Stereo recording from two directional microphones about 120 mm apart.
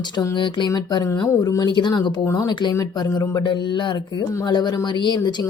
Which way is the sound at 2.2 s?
30° left (ahead or behind).